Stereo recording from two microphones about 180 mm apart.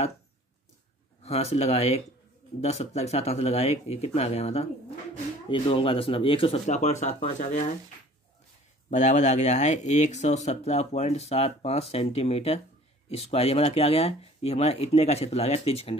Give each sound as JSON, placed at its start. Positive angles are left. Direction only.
{"t": 1.2, "sound": "speech", "side_deg": 35}
{"t": 8.9, "sound": "speech", "side_deg": 40}